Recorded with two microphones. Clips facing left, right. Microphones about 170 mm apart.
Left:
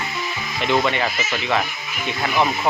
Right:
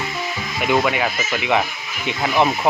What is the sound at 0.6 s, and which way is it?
Speech, 5° right (ahead or behind).